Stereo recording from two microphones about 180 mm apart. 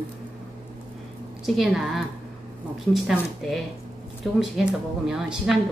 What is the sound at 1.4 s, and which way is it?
A woman's voice, centre (ahead or behind).